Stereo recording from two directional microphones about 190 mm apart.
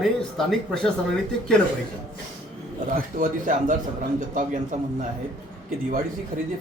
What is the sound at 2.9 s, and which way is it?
A man's voice, 45° right (ahead or behind).